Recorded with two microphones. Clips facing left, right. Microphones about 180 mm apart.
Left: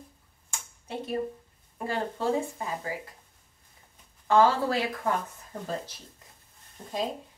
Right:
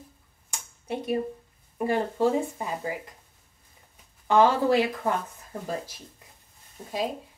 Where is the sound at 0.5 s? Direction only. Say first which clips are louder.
Right 5 dB; 15° right (ahead or behind).